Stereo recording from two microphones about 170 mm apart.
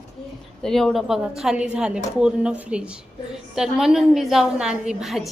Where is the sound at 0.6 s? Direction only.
Centre (ahead or behind).